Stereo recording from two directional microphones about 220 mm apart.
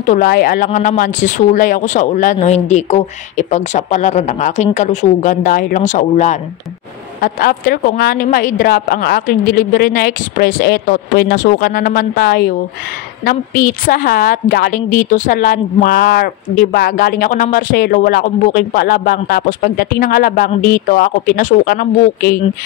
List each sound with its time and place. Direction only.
0.0 s a woman's voice: 35° left (ahead or behind)
13.8 s a woman's voice: 40° left (ahead or behind)